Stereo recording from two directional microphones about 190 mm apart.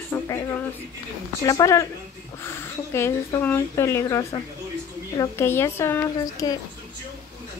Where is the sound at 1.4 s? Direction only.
20° left (ahead or behind).